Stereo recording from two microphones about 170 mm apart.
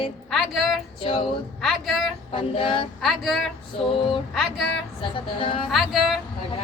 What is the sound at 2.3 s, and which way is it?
Child singing, 30° left (ahead or behind).